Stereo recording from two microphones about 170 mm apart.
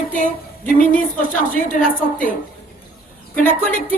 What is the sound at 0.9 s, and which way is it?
Speech, 55° left (ahead or behind).